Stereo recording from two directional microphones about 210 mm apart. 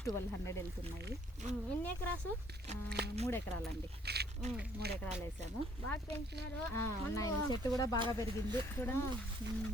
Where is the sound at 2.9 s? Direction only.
50° right (ahead or behind).